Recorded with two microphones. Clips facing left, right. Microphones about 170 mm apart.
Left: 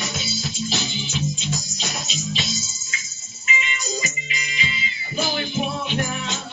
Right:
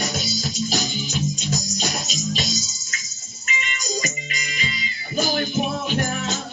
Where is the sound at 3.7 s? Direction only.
40° right (ahead or behind).